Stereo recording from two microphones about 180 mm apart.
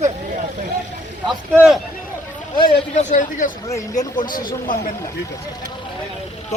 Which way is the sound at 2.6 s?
35° left (ahead or behind).